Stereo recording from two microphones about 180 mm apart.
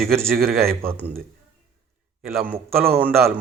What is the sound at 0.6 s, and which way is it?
Speech, 15° right (ahead or behind).